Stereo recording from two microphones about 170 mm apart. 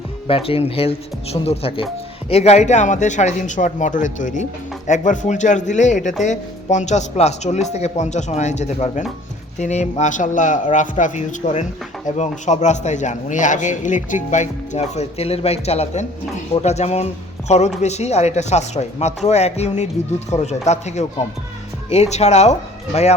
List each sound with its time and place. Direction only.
0.3 s speech: 35° left (ahead or behind)
22.1 s speech: 40° left (ahead or behind)